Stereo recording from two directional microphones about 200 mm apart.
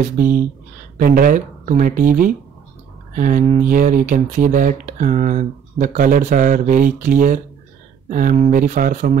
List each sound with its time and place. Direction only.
0.2 s speech: 40° right (ahead or behind)